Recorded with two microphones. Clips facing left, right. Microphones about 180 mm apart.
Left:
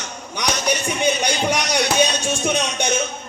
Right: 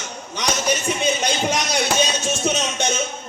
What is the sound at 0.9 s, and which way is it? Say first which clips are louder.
Speech: left 1 dB; 15° left (ahead or behind).